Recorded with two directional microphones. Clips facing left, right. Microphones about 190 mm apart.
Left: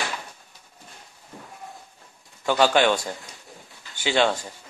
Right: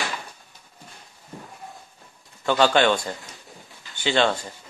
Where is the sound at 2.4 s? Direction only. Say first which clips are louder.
Even; 10° left (ahead or behind).